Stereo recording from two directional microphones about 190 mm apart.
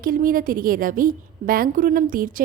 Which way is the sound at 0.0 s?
45° right (ahead or behind).